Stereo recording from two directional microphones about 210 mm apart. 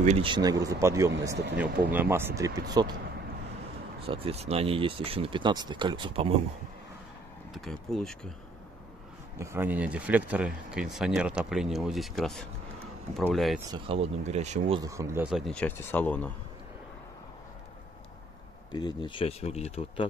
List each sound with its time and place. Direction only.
0.0 s speech: 30° right (ahead or behind)
4.0 s speech: 25° right (ahead or behind)
7.5 s speech: centre (ahead or behind)
9.4 s speech: 10° right (ahead or behind)
13.7 s speech: 25° right (ahead or behind)
14.8 s speech: 15° right (ahead or behind)
15.2 s speech: centre (ahead or behind)
18.7 s speech: 20° left (ahead or behind)